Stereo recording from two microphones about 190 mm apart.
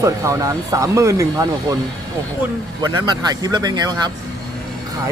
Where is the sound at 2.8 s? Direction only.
20° right (ahead or behind).